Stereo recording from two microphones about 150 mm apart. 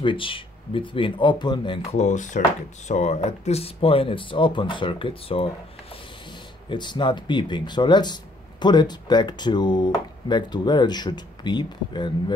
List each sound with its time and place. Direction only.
0.0 s speech: 35° left (ahead or behind)
2.0 s speech: 55° left (ahead or behind); by 5.5 s 35° left (ahead or behind)
6.7 s speech: 30° left (ahead or behind)